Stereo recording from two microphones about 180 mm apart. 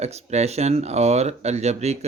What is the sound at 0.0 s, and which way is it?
Speech, 35° right (ahead or behind).